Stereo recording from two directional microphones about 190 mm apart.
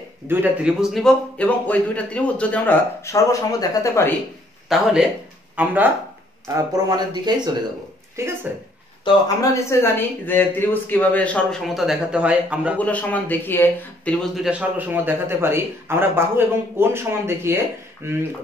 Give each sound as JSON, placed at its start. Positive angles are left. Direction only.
{"t": 0.3, "sound": "a man's voice", "side_deg": -5}
{"t": 4.7, "sound": "speech", "side_deg": 0}
{"t": 6.4, "sound": "speech", "side_deg": -20}
{"t": 9.0, "sound": "a man's voice", "side_deg": 15}
{"t": 12.7, "sound": "a man's voice", "side_deg": 10}
{"t": 14.3, "sound": "speech", "side_deg": -5}